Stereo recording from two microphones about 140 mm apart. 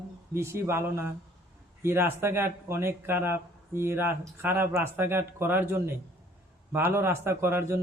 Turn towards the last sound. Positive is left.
turn(degrees=-15)  # may be behind; listen again after turning